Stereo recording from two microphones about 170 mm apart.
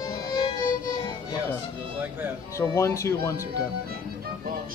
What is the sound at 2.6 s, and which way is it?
Speech, 15° left (ahead or behind).